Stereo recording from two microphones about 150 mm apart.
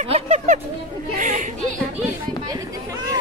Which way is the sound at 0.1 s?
50° right (ahead or behind).